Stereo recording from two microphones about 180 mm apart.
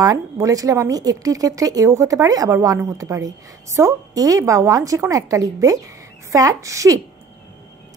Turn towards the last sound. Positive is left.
turn(degrees=-15)  # may be behind; listen again after turning